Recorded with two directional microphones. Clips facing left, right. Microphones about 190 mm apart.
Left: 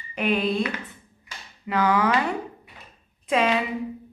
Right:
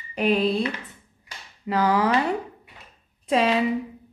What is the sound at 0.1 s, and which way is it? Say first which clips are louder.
A woman's voice: right 2 dB; 35° right (ahead or behind).